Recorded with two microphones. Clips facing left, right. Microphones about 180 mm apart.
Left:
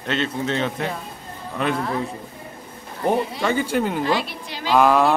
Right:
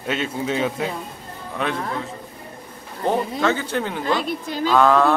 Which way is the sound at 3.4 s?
10° left (ahead or behind).